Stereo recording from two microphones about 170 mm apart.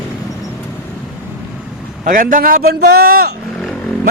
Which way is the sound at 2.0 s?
50° right (ahead or behind).